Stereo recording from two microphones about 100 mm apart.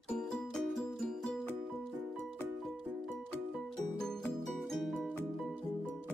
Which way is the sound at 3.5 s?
5° left (ahead or behind).